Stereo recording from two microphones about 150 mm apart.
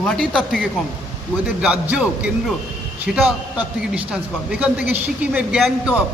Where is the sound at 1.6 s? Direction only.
10° right (ahead or behind).